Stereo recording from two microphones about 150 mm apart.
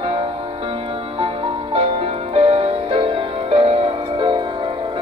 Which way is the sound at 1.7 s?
40° right (ahead or behind).